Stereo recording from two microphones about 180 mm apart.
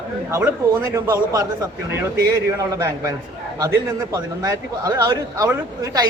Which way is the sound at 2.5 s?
20° right (ahead or behind).